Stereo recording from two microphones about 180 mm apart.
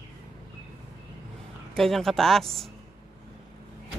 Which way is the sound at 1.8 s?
Centre (ahead or behind).